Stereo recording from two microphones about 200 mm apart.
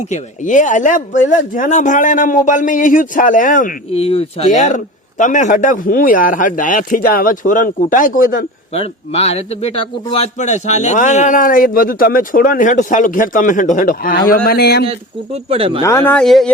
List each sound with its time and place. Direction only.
0.1 s a man's voice: 40° left (ahead or behind)
8.7 s a man's voice: 30° left (ahead or behind); by 14.8 s 50° left (ahead or behind)
14.8 s speech: 30° right (ahead or behind)
15.8 s speech: 10° left (ahead or behind)